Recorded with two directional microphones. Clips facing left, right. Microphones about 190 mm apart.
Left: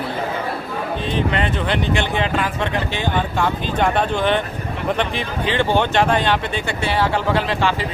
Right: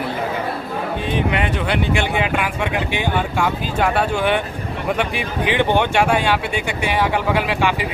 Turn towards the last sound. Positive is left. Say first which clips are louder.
# right 1 dB
turn(degrees=-10)  # may be behind; listen again after turning